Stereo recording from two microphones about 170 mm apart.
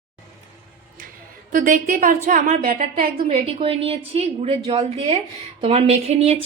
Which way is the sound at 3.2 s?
35° right (ahead or behind).